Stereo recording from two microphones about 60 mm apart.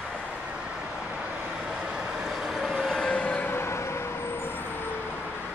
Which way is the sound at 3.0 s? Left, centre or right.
Left.